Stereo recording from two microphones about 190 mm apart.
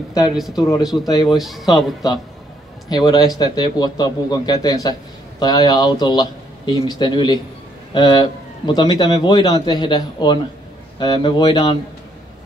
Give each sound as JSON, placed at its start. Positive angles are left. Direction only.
{"t": 0.3, "sound": "speech", "side_deg": 0}
{"t": 0.9, "sound": "a man's voice", "side_deg": 20}
{"t": 1.2, "sound": "speech", "side_deg": 0}
{"t": 2.9, "sound": "a man's voice", "side_deg": 20}